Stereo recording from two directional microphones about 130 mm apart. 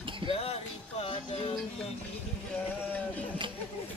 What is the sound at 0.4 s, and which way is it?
Music, 50° left (ahead or behind).